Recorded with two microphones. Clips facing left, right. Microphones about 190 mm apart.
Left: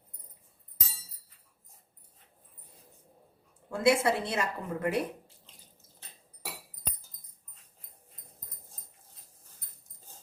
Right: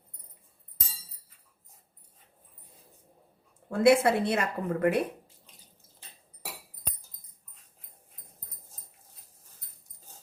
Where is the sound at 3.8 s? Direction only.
60° right (ahead or behind).